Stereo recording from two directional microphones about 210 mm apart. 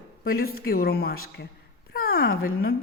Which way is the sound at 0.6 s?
45° left (ahead or behind).